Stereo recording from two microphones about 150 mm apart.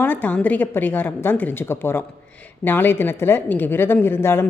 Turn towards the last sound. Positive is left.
turn(degrees=15)  # may be behind; listen again after turning